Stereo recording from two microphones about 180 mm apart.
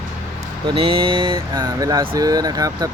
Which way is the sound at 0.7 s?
30° right (ahead or behind).